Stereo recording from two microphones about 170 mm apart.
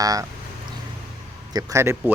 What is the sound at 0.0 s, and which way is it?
Speech, 20° right (ahead or behind).